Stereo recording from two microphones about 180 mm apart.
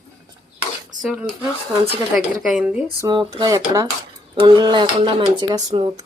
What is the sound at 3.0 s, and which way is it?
Speech, 20° right (ahead or behind).